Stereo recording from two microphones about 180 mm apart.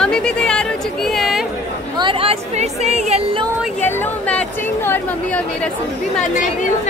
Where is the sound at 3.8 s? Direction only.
10° left (ahead or behind).